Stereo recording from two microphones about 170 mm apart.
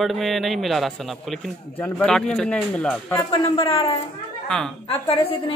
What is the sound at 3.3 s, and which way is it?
Speech, 30° left (ahead or behind).